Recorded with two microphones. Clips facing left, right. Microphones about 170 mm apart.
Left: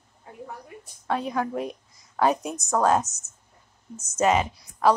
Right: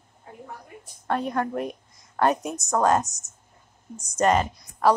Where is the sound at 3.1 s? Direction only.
15° right (ahead or behind).